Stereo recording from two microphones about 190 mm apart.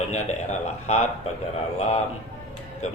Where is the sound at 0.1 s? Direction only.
35° left (ahead or behind).